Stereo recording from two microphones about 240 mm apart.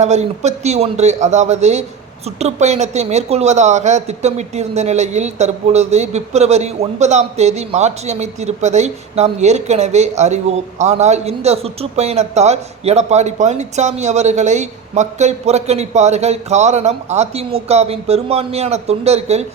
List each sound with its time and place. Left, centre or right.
0.0 s speech: right